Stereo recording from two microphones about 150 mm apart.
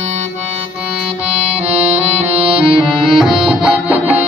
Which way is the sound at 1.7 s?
45° right (ahead or behind).